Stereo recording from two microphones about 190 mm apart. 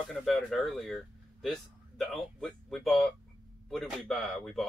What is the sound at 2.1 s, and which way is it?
Speech, centre (ahead or behind).